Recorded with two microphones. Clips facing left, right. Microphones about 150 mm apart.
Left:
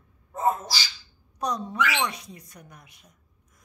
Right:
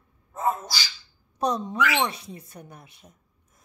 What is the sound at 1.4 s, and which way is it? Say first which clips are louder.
Speech: right 3 dB; 25° right (ahead or behind).